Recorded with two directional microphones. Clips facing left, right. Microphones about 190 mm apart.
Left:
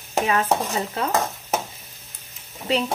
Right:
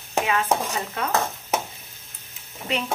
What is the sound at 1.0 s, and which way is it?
Speech, 35° left (ahead or behind).